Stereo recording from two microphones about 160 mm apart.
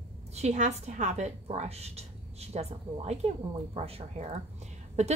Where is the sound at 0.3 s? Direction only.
45° right (ahead or behind).